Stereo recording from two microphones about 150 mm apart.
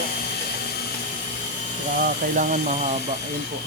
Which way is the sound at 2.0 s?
65° right (ahead or behind).